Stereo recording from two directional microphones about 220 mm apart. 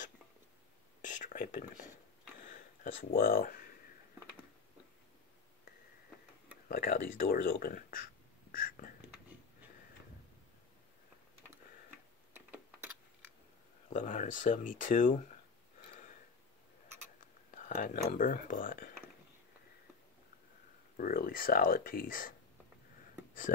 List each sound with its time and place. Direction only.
1.0 s a sound: 35° left (ahead or behind)
2.5 s speech: 40° left (ahead or behind)
6.7 s speech: 40° left (ahead or behind)
8.5 s whispering: 40° left (ahead or behind)
12.4 s typing: 10° right (ahead or behind)
13.8 s speech: 35° left (ahead or behind)
17.6 s speech: 35° left (ahead or behind)
20.9 s speech: 40° left (ahead or behind)